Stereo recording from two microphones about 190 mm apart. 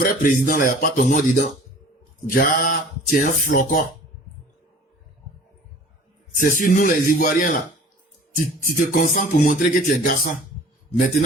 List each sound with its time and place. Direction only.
0.0 s speech: 45° left (ahead or behind)
6.4 s speech: 45° left (ahead or behind)
8.6 s speech: 45° left (ahead or behind)